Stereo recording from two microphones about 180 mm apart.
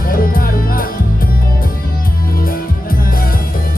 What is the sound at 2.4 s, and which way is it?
Music, 50° left (ahead or behind).